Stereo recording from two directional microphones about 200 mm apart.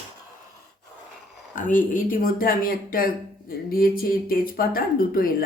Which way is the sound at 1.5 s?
40° left (ahead or behind).